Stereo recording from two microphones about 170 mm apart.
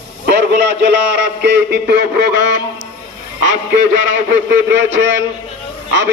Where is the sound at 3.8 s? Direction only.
90° right.